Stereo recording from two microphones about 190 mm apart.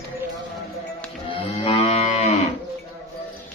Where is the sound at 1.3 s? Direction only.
30° left (ahead or behind).